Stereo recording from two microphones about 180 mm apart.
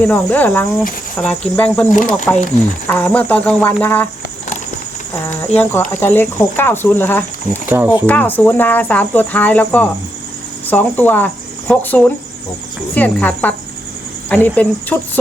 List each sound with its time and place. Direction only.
0.0 s speech: 10° left (ahead or behind)
1.9 s speech: 45° left (ahead or behind)
2.8 s speech: 10° left (ahead or behind)
5.2 s speech: 10° left (ahead or behind)
7.7 s speech: 10° right (ahead or behind)
8.0 s speech: 10° left (ahead or behind)